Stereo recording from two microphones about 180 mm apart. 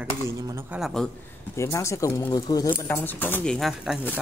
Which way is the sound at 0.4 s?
20° right (ahead or behind).